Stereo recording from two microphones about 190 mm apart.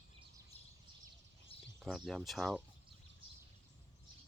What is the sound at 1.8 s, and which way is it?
Speech, centre (ahead or behind).